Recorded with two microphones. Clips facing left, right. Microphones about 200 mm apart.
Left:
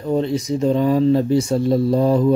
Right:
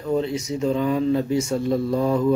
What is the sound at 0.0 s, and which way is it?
Speech, 35° left (ahead or behind).